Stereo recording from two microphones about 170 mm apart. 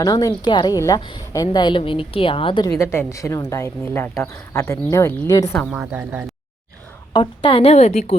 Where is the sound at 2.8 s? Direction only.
15° left (ahead or behind).